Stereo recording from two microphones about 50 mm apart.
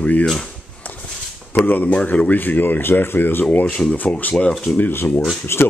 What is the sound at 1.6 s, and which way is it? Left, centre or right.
Speech, left.